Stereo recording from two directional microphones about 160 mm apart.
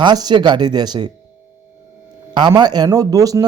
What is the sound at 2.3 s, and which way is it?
A man's voice, 30° right (ahead or behind).